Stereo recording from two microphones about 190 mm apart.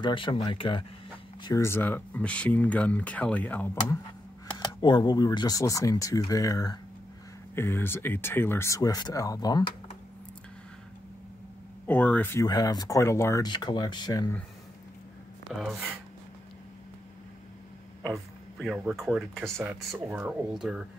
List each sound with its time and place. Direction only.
0.0 s speech: 25° left (ahead or behind)
1.4 s speech: 15° left (ahead or behind)
4.6 s speech: 25° left (ahead or behind)
11.8 s speech: 10° left (ahead or behind)
15.5 s speech: centre (ahead or behind)
18.0 s speech: centre (ahead or behind)